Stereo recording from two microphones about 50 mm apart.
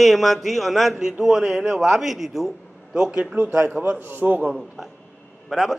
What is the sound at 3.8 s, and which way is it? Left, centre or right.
Speech, right.